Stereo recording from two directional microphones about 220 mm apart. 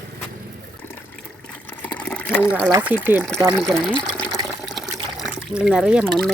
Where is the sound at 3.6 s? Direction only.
Centre (ahead or behind).